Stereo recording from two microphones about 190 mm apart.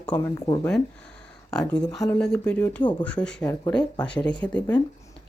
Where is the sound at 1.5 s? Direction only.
5° left (ahead or behind).